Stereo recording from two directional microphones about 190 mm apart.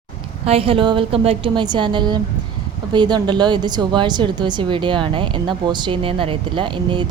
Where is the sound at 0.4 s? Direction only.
30° right (ahead or behind).